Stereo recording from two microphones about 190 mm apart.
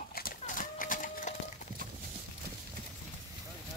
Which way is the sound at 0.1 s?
50° left (ahead or behind).